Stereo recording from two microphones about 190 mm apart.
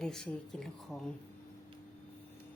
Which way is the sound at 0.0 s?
Centre (ahead or behind).